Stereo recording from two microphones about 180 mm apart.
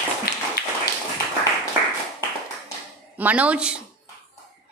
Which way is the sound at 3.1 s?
10° right (ahead or behind).